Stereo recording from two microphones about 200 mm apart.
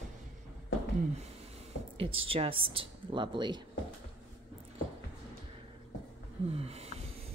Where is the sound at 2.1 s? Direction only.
30° right (ahead or behind).